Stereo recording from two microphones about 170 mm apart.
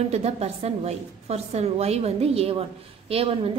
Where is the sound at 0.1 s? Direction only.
40° right (ahead or behind).